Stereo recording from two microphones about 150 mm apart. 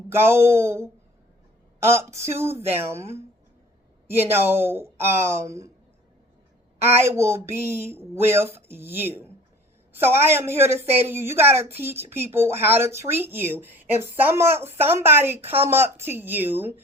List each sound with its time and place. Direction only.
0.1 s speech: 15° right (ahead or behind)
7.0 s speech: 15° right (ahead or behind)